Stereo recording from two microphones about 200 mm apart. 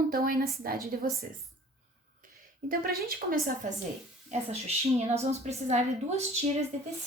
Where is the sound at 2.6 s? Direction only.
50° right (ahead or behind).